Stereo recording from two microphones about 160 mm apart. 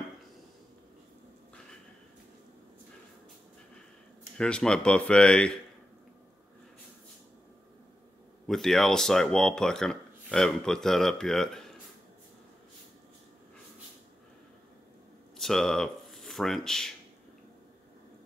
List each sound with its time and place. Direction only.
4.4 s speech: 5° left (ahead or behind)
8.5 s speech: centre (ahead or behind)
15.3 s speech: centre (ahead or behind)